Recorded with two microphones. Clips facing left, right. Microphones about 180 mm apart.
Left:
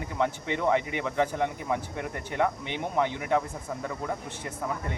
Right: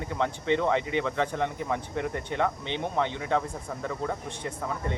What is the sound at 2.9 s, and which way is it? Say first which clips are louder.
Speech: left 2 dB; 10° left (ahead or behind).